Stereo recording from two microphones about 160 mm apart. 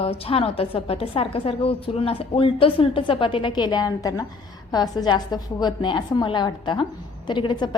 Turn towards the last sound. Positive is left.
turn(degrees=30)  # may be behind; listen again after turning